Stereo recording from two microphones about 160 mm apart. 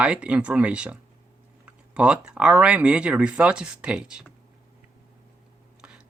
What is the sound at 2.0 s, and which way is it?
Speech, 5° right (ahead or behind).